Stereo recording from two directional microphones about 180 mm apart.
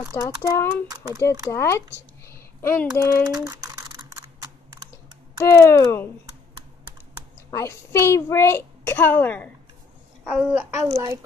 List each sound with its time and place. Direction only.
0.1 s a woman's voice: 15° left (ahead or behind)
0.8 s speech: 20° right (ahead or behind)
1.2 s a woman's voice: 15° left (ahead or behind)
2.2 s a sound: 15° left (ahead or behind)
3.0 s a woman's voice: 15° left (ahead or behind)
3.3 s computer keyboard: 20° right (ahead or behind)
5.4 s a woman's voice: 15° left (ahead or behind)
7.5 s a woman's voice: 15° left (ahead or behind)
10.2 s a child's voice: 10° right (ahead or behind)